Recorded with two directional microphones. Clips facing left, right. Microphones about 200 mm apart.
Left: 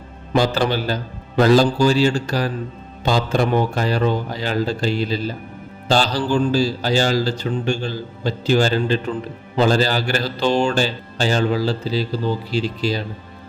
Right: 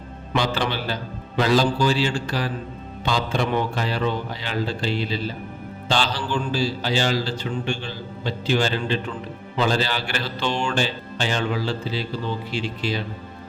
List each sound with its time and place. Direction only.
0.3 s a man's voice: 40° left (ahead or behind)